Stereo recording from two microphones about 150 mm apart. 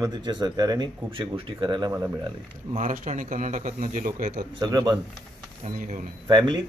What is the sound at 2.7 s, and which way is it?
A man's voice, 55° right (ahead or behind).